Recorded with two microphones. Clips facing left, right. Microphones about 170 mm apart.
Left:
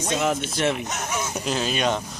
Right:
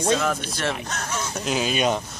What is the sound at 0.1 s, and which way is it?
A man's voice, 20° left (ahead or behind).